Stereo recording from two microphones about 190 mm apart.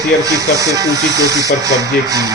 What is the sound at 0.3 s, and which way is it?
Speech, 15° right (ahead or behind).